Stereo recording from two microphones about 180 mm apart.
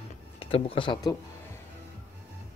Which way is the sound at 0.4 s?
30° left (ahead or behind).